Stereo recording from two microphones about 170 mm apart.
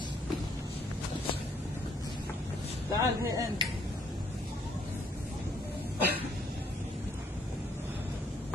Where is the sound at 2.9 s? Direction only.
20° right (ahead or behind).